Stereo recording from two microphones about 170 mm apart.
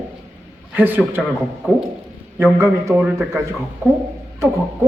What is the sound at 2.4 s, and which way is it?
A man's voice, 15° right (ahead or behind).